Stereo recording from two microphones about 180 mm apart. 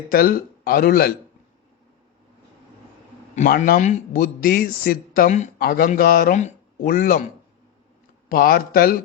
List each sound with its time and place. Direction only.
0.1 s a man's voice: 55° left (ahead or behind)
3.3 s a man's voice: 45° left (ahead or behind)
8.3 s speech: 55° left (ahead or behind)